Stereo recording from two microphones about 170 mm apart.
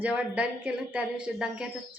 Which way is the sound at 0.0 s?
10° right (ahead or behind).